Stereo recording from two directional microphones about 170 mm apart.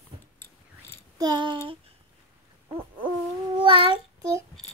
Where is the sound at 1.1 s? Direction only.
25° right (ahead or behind).